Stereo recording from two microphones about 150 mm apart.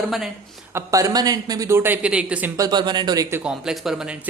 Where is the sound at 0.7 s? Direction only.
20° right (ahead or behind).